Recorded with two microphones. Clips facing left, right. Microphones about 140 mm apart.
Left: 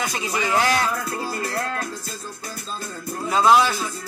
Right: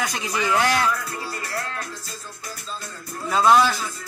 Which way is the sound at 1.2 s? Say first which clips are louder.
Left 4 dB; 25° left (ahead or behind).